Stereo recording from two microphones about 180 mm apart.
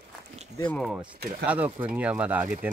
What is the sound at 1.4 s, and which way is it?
Speech, 10° right (ahead or behind).